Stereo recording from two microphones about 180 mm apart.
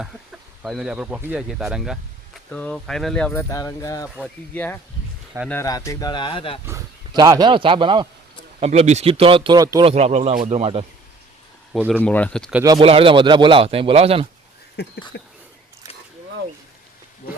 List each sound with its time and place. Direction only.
0.6 s speech: 5° right (ahead or behind)
3.3 s speech: 15° left (ahead or behind)
6.7 s speech: 20° right (ahead or behind)
9.8 s speech: 35° right (ahead or behind)
11.7 s speech: centre (ahead or behind)
12.8 s speech: 30° right (ahead or behind)
14.8 s a sound: 65° left (ahead or behind)